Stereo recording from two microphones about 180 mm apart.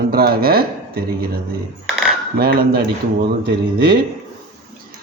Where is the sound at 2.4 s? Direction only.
55° right (ahead or behind).